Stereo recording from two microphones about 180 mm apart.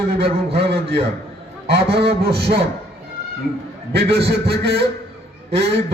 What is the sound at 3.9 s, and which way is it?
Speech, 65° right (ahead or behind).